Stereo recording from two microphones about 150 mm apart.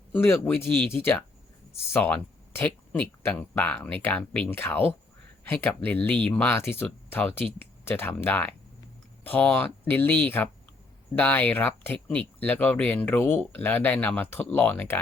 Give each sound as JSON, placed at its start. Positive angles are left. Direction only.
{"t": 0.1, "sound": "a man's voice", "side_deg": 15}
{"t": 0.3, "sound": "a man's voice", "side_deg": 0}
{"t": 0.8, "sound": "speech", "side_deg": 15}